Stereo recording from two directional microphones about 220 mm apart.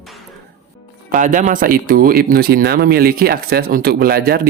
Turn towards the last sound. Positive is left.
turn(degrees=-45)  # may be behind; listen again after turning